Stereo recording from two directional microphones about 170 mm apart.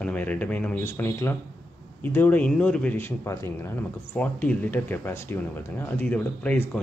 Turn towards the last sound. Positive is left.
turn(degrees=10)  # may be behind; listen again after turning